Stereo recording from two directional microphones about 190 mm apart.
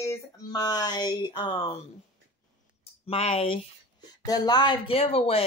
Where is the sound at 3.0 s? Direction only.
30° left (ahead or behind).